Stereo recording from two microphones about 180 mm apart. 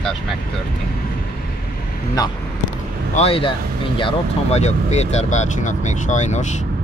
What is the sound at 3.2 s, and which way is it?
Speech, 30° left (ahead or behind).